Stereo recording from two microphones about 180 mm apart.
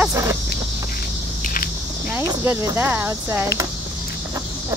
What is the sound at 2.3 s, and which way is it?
Speech, 15° right (ahead or behind).